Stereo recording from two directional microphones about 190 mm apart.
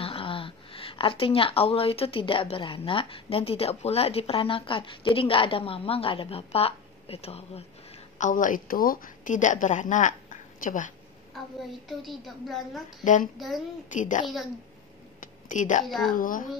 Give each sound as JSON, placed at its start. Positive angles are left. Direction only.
{"t": 0.0, "sound": "speech", "side_deg": 30}
{"t": 8.2, "sound": "a woman's voice", "side_deg": 45}
{"t": 12.0, "sound": "a woman's voice", "side_deg": 0}
{"t": 13.0, "sound": "a woman's voice", "side_deg": 40}
{"t": 15.4, "sound": "a woman's voice", "side_deg": 40}
{"t": 15.8, "sound": "a woman's voice", "side_deg": 0}
{"t": 16.2, "sound": "a woman's voice", "side_deg": 45}